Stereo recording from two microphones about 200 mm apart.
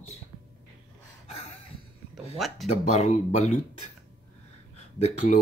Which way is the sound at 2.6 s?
35° left (ahead or behind).